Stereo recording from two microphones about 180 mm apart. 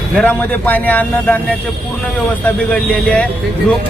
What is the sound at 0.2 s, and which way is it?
A man's voice, 10° left (ahead or behind).